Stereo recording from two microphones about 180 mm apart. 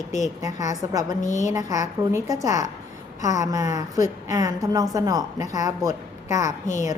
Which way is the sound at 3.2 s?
45° left (ahead or behind).